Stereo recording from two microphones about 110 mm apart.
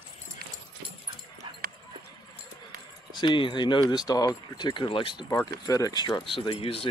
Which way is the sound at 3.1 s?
45° left (ahead or behind).